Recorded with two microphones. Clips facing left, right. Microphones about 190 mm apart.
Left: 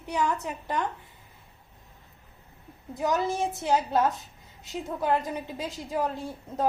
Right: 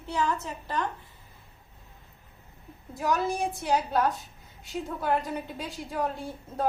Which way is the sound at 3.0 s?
20° left (ahead or behind).